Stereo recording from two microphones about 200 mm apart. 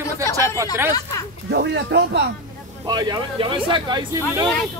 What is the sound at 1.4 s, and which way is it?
Speech, 60° right (ahead or behind).